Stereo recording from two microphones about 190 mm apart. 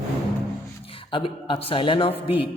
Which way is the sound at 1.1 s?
25° left (ahead or behind).